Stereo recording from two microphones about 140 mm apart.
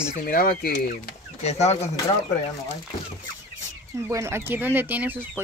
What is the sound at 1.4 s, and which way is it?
Speech, 50° left (ahead or behind).